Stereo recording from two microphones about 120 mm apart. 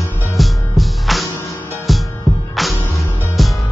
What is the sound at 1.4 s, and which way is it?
Music, 20° left (ahead or behind).